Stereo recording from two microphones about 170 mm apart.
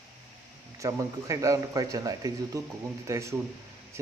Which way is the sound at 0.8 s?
20° right (ahead or behind).